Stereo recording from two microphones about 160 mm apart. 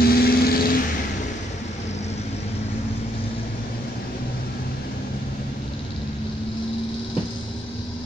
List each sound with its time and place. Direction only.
0.0 s vehicle: 75° left (ahead or behind)